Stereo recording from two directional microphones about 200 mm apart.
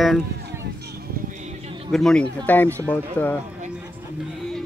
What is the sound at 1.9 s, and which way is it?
Speech, 5° left (ahead or behind).